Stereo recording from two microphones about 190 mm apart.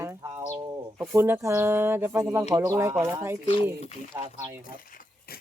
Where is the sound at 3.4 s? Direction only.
25° left (ahead or behind).